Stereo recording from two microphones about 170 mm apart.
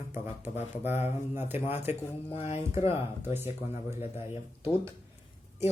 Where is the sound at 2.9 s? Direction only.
15° right (ahead or behind).